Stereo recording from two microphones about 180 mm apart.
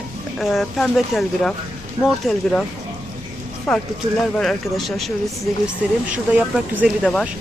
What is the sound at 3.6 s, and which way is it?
Speech, 5° left (ahead or behind).